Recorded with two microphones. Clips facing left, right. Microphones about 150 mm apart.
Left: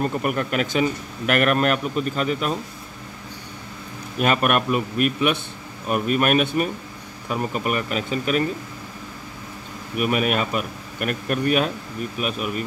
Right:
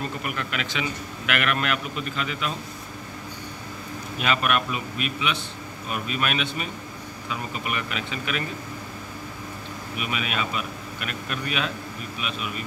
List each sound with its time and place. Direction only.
0.0 s a man's voice: 45° left (ahead or behind)
4.2 s a man's voice: 50° left (ahead or behind)
9.9 s a man's voice: 50° left (ahead or behind)